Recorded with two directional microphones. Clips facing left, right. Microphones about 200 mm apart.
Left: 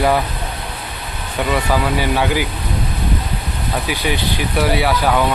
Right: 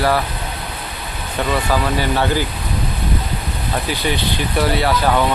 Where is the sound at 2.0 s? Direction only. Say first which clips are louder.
Even; 10° left (ahead or behind).